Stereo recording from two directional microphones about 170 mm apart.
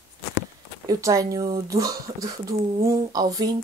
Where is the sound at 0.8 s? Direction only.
20° right (ahead or behind).